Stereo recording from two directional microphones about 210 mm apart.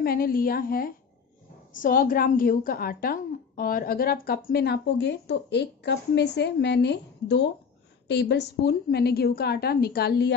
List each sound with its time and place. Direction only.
0.0 s a woman's voice: 45° left (ahead or behind)